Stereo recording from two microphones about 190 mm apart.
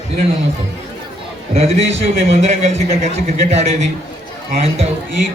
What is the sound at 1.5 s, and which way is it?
A man's voice, 35° right (ahead or behind).